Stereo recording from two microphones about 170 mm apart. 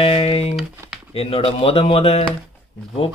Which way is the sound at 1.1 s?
35° left (ahead or behind).